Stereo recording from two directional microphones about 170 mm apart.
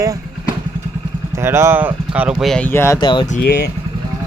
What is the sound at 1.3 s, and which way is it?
Speech, 15° right (ahead or behind).